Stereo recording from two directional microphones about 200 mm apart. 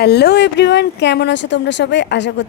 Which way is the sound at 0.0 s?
55° left (ahead or behind).